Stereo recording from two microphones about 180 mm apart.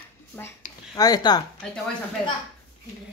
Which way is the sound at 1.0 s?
20° left (ahead or behind).